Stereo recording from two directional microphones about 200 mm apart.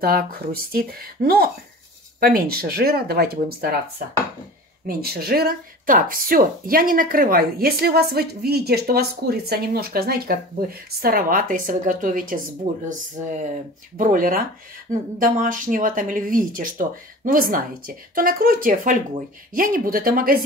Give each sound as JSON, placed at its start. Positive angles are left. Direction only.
{"t": 0.0, "sound": "speech", "side_deg": -50}
{"t": 4.8, "sound": "speech", "side_deg": -50}